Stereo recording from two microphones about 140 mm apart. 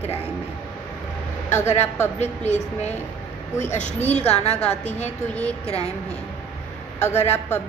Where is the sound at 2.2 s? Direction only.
50° left (ahead or behind).